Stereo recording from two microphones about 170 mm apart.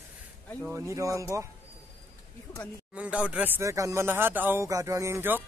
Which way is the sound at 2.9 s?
5° right (ahead or behind).